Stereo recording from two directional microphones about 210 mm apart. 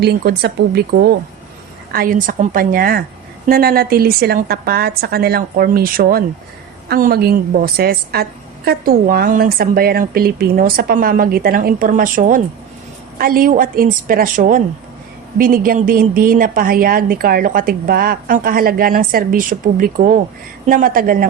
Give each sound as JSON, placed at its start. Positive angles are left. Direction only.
{"t": 0.0, "sound": "a woman's voice", "side_deg": -50}
{"t": 1.9, "sound": "a woman's voice", "side_deg": -45}